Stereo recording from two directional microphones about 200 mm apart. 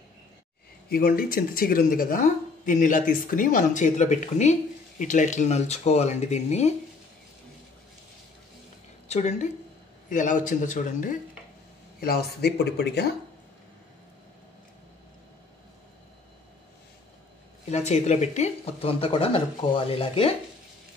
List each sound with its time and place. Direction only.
0.8 s speech: 45° left (ahead or behind)
9.0 s a woman's voice: 35° left (ahead or behind)
12.0 s speech: 50° left (ahead or behind)
17.6 s speech: 35° left (ahead or behind)